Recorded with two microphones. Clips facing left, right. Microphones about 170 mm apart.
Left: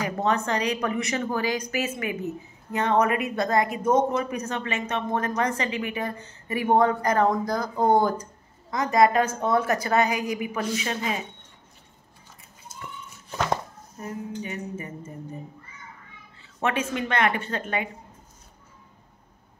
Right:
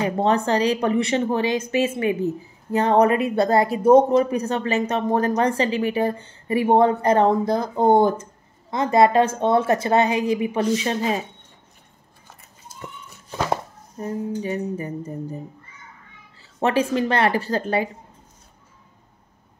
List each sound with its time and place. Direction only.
0.0 s speech: 30° right (ahead or behind)
13.9 s speech: 30° right (ahead or behind)
16.5 s speech: 35° right (ahead or behind)